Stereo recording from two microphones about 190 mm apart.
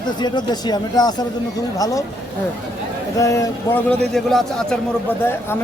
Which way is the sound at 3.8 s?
Centre (ahead or behind).